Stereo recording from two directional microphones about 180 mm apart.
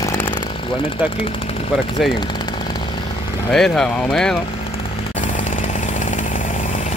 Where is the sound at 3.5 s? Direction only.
5° left (ahead or behind).